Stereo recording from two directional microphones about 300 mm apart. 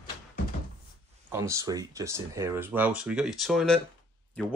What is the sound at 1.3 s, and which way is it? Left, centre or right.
Speech, centre.